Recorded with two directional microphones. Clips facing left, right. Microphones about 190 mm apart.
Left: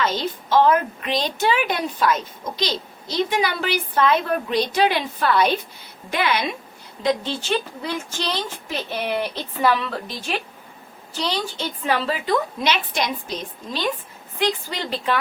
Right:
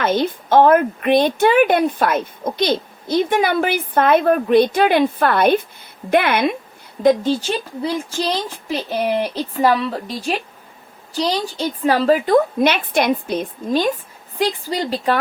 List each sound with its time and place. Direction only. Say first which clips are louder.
0.0 s a woman's voice: right 5 dB; 55° right (ahead or behind)
7.5 s speech: right 2 dB; 35° right (ahead or behind)
11.1 s a woman's voice: right 5 dB; 35° right (ahead or behind)